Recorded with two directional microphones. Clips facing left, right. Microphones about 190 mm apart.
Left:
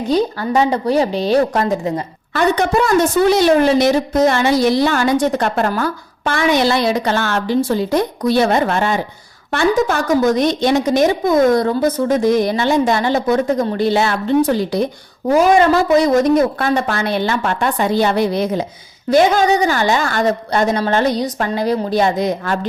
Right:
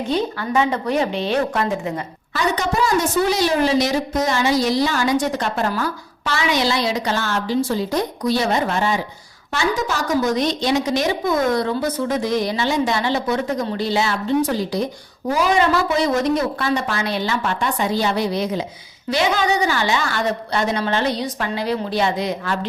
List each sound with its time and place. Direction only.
0.1 s a woman's voice: 40° left (ahead or behind)
2.3 s a woman's voice: 60° left (ahead or behind)
15.3 s a woman's voice: 50° left (ahead or behind)